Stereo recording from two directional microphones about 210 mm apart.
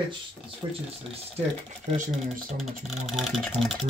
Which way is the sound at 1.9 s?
35° right (ahead or behind).